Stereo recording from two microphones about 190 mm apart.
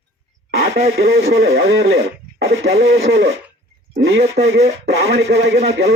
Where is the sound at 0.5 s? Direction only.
55° right (ahead or behind).